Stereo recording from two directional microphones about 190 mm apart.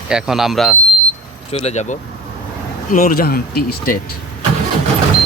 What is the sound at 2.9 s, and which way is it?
Speech, 45° left (ahead or behind).